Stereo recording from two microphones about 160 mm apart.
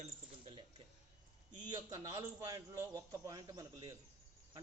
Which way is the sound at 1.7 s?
20° right (ahead or behind).